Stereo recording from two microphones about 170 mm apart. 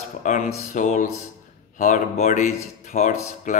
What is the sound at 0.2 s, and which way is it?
Mantra, 45° left (ahead or behind).